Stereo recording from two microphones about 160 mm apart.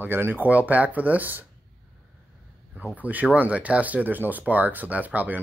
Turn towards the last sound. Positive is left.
turn(degrees=-10)  # may be behind; listen again after turning